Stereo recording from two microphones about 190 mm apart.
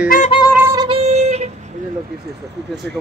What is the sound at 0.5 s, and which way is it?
Music, 15° right (ahead or behind).